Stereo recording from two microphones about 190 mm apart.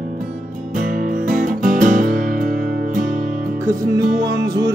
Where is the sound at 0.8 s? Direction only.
45° right (ahead or behind).